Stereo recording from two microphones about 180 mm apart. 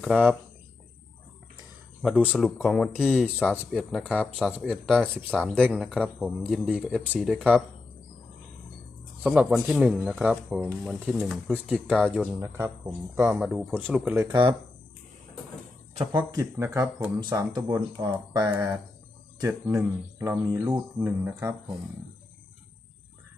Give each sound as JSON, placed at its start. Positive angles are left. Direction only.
{"t": 0.0, "sound": "speech", "side_deg": -5}
{"t": 2.0, "sound": "speech", "side_deg": -5}
{"t": 9.2, "sound": "speech", "side_deg": -5}
{"t": 10.6, "sound": "speech", "side_deg": 5}
{"t": 14.2, "sound": "speech", "side_deg": -25}
{"t": 16.1, "sound": "speech", "side_deg": -20}
{"t": 17.3, "sound": "speech", "side_deg": -25}